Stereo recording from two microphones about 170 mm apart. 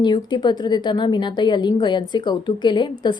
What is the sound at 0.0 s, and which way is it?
A woman's voice, 25° left (ahead or behind).